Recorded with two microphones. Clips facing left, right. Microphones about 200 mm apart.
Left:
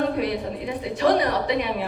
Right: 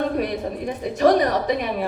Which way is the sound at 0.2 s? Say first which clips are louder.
Right 1 dB; 45° right (ahead or behind).